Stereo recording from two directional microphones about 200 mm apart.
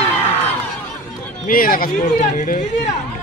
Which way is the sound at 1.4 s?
45° left (ahead or behind).